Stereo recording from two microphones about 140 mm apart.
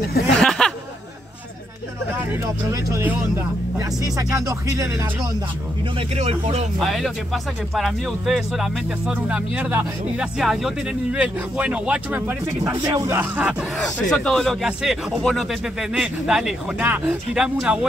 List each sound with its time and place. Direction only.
0.4 s a sound: 5° left (ahead or behind)
2.1 s speech: 20° right (ahead or behind)
5.9 s speech: 45° right (ahead or behind)
6.8 s speech: centre (ahead or behind); by 12.8 s 15° right (ahead or behind)
12.8 s speech: 30° right (ahead or behind)
13.1 s speech: 10° right (ahead or behind)
13.7 s speech: 5° left (ahead or behind)